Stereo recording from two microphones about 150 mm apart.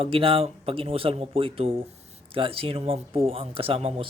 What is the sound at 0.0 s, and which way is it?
Speech, 40° right (ahead or behind).